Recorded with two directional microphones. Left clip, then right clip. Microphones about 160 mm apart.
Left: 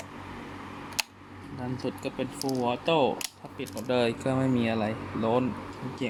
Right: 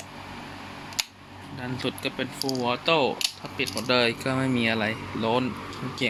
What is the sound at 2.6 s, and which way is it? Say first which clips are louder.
Speech: right 2 dB; 15° left (ahead or behind).